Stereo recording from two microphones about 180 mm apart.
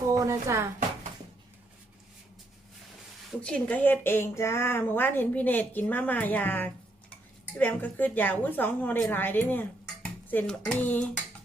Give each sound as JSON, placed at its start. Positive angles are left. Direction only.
{"t": 0.1, "sound": "speech", "side_deg": -20}
{"t": 3.4, "sound": "a woman's voice", "side_deg": 5}